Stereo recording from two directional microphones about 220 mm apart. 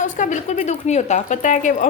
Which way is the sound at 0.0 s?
35° left (ahead or behind).